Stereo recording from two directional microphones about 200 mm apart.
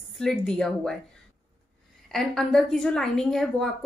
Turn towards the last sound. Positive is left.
turn(degrees=0)  # may be behind; listen again after turning